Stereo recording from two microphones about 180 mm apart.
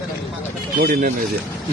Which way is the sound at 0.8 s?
50° right (ahead or behind).